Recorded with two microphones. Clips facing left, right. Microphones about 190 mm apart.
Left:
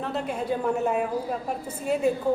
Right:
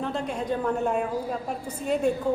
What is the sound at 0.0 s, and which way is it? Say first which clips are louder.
A woman's voice: even; 5° left (ahead or behind).